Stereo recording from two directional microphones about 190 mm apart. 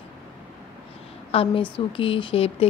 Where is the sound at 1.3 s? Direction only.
30° left (ahead or behind).